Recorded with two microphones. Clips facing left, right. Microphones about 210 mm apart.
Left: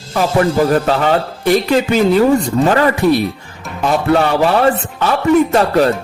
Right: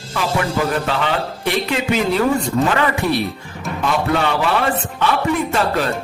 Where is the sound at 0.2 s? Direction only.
40° left (ahead or behind).